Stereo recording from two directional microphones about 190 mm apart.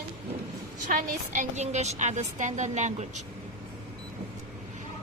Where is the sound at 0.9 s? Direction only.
40° right (ahead or behind).